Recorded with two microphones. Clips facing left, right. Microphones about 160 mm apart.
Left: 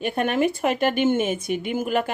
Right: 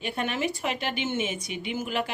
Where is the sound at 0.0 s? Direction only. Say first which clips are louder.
Left 7 dB; 50° left (ahead or behind).